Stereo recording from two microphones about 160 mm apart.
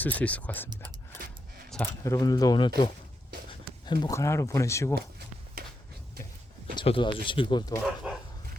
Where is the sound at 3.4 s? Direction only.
30° left (ahead or behind).